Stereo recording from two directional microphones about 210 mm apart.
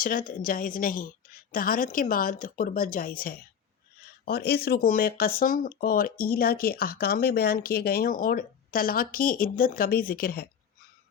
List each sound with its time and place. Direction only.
0.0 s a woman's voice: 40° left (ahead or behind)